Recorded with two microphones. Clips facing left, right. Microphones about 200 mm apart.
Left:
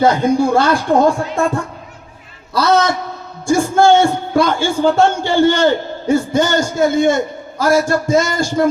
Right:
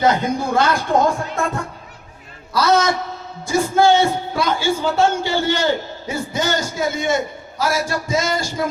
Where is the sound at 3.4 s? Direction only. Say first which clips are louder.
Left 3 dB; 50° left (ahead or behind).